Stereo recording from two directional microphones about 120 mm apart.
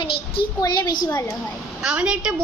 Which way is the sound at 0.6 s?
30° left (ahead or behind).